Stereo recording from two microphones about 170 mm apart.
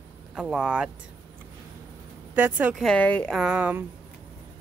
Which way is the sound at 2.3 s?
10° right (ahead or behind).